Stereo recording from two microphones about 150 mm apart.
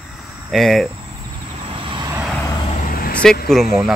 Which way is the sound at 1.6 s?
35° right (ahead or behind).